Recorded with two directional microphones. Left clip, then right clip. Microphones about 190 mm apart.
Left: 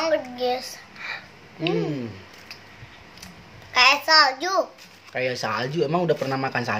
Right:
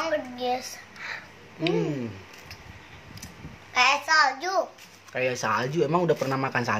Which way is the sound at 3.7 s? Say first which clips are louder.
Left 4 dB; 45° left (ahead or behind).